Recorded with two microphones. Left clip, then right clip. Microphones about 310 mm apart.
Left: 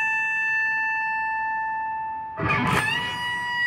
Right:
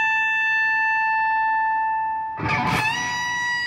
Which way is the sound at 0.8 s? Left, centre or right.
Right.